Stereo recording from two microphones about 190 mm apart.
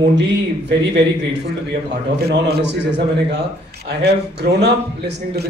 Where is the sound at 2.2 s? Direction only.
65° right (ahead or behind).